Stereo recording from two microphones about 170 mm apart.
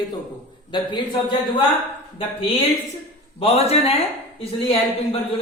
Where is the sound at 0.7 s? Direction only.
30° left (ahead or behind).